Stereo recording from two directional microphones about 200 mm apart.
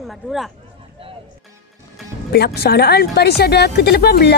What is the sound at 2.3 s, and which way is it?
Speech, 50° left (ahead or behind).